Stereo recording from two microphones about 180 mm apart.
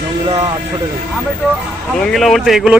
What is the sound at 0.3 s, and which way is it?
Speech, 35° right (ahead or behind).